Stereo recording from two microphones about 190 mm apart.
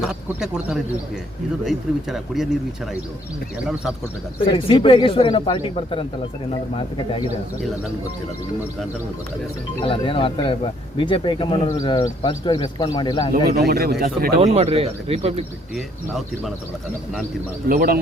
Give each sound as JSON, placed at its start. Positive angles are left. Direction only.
{"t": 0.0, "sound": "speech", "side_deg": -5}
{"t": 4.5, "sound": "speech", "side_deg": 25}
{"t": 9.8, "sound": "speech", "side_deg": 30}
{"t": 13.7, "sound": "a man's voice", "side_deg": -55}
{"t": 14.0, "sound": "speech", "side_deg": -45}
{"t": 14.5, "sound": "speech", "side_deg": -30}
{"t": 15.7, "sound": "speech", "side_deg": 0}
{"t": 17.7, "sound": "speech", "side_deg": -50}